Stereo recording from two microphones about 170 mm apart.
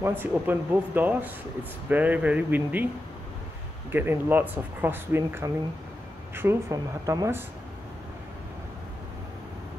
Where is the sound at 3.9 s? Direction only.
10° right (ahead or behind).